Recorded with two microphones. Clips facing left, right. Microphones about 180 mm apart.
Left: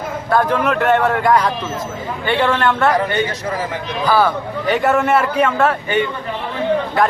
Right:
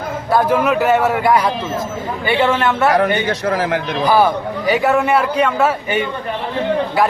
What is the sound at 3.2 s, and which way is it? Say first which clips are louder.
Speech: right 5 dB; 70° right (ahead or behind).